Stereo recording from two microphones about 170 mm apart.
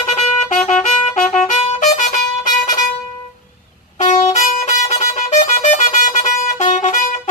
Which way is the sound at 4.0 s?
45° left (ahead or behind).